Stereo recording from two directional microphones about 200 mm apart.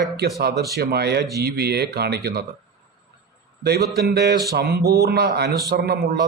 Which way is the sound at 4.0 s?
55° right (ahead or behind).